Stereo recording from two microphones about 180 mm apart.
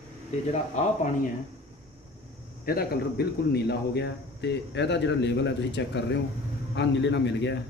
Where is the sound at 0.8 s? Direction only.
40° left (ahead or behind).